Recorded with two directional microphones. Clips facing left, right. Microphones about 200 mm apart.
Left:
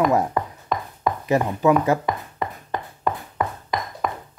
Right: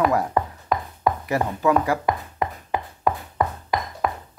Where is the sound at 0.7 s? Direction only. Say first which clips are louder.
Right 2 dB; 5° right (ahead or behind).